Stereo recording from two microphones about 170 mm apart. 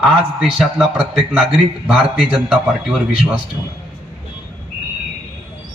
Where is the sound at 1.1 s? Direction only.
Centre (ahead or behind).